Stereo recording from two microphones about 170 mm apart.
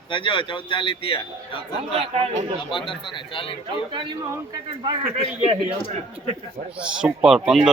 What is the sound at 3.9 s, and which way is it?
A man's voice, 25° right (ahead or behind).